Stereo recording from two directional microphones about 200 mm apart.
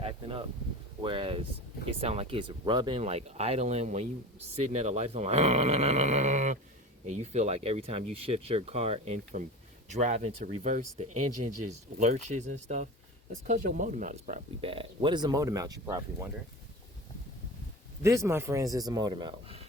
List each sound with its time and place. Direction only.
0.0 s a sound: 25° right (ahead or behind)
1.0 s speech: 25° right (ahead or behind)
18.0 s speech: 15° right (ahead or behind)